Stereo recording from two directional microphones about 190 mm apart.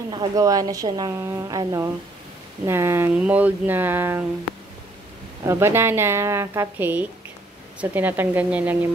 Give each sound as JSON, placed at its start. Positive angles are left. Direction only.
{"t": 0.1, "sound": "a woman's voice", "side_deg": -20}
{"t": 5.5, "sound": "speech", "side_deg": -10}